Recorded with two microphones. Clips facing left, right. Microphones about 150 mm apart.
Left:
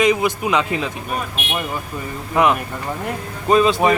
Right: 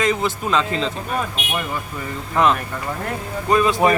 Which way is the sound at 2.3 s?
15° left (ahead or behind).